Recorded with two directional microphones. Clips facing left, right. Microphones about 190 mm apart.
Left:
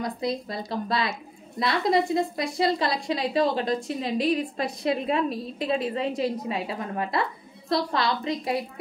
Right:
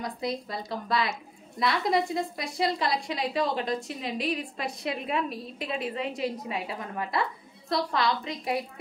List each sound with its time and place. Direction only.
0.2 s a woman's voice: 30° left (ahead or behind)